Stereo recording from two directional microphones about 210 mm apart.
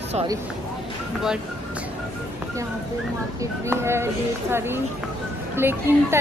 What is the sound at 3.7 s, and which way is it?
A woman's voice, 10° right (ahead or behind).